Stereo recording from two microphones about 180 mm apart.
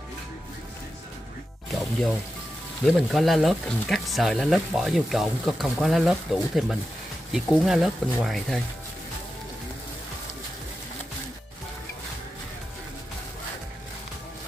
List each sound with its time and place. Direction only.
1.7 s music: centre (ahead or behind)
2.8 s speech: centre (ahead or behind)